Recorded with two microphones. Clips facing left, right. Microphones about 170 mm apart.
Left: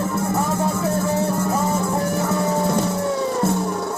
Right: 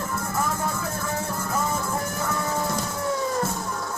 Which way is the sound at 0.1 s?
70° left (ahead or behind).